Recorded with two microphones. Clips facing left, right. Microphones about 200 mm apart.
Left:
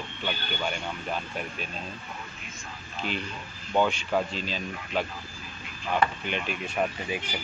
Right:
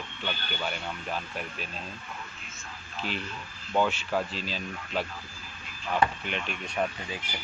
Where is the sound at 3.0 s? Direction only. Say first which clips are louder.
Left 2 dB; centre (ahead or behind).